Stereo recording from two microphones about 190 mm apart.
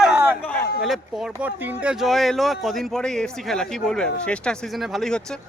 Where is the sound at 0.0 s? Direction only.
5° right (ahead or behind).